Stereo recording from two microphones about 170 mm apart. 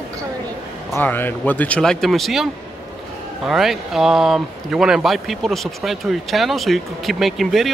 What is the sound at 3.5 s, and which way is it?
Speech, centre (ahead or behind).